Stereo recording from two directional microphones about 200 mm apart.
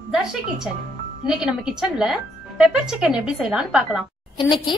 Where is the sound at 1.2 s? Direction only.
5° right (ahead or behind).